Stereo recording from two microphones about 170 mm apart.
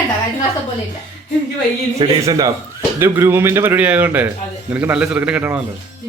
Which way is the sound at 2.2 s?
20° right (ahead or behind).